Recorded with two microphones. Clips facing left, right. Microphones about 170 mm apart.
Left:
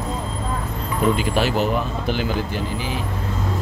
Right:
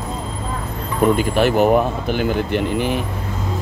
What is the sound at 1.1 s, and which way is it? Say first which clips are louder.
Speech: right 4 dB; 50° right (ahead or behind).